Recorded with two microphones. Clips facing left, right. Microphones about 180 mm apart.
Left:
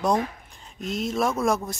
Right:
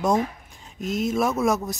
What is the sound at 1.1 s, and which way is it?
Speech, 5° right (ahead or behind).